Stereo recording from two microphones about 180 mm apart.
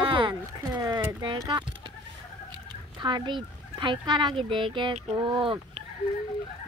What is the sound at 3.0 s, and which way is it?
Fowl, 25° right (ahead or behind).